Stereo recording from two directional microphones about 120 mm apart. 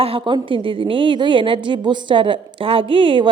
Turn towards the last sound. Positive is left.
turn(degrees=-45)  # may be behind; listen again after turning